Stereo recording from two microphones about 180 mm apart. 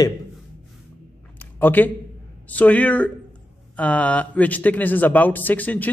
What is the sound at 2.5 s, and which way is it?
Speech, 10° left (ahead or behind).